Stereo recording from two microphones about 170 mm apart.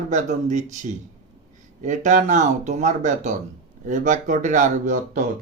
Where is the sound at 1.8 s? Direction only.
45° right (ahead or behind).